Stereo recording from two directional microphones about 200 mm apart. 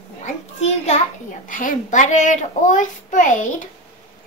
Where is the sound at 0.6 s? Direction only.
30° left (ahead or behind).